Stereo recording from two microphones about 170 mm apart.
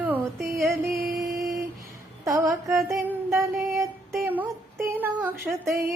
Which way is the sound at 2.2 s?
20° right (ahead or behind).